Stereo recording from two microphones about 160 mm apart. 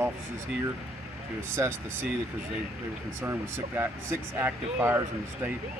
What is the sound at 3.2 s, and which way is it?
Speech, 15° right (ahead or behind).